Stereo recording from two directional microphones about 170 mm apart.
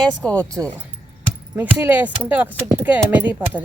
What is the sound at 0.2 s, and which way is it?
Speech, 5° left (ahead or behind).